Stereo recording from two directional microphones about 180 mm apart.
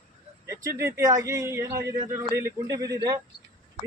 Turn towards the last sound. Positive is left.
turn(degrees=-20)  # may be behind; listen again after turning